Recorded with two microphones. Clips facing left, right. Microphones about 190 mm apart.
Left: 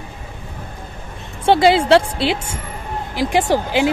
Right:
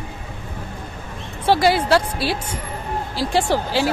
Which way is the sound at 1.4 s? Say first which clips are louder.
Left 4 dB; 25° left (ahead or behind).